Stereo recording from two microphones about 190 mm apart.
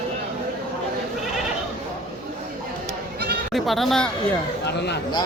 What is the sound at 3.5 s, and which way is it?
Speech, centre (ahead or behind).